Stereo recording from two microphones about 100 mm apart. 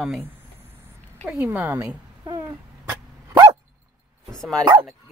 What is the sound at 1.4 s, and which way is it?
Speech, 15° right (ahead or behind).